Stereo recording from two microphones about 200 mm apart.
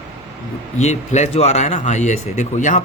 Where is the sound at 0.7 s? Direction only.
35° left (ahead or behind).